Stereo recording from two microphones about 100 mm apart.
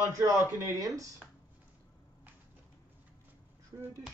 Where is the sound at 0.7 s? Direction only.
35° right (ahead or behind).